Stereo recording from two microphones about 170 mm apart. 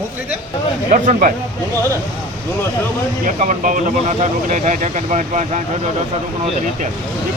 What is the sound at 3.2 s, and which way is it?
Speech, 50° right (ahead or behind).